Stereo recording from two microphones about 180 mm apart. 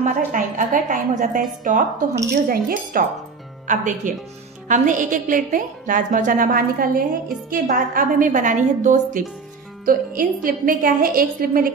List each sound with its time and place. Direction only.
0.0 s a woman's voice: 45° right (ahead or behind)